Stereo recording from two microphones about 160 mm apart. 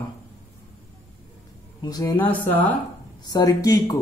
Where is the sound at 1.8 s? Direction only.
25° left (ahead or behind).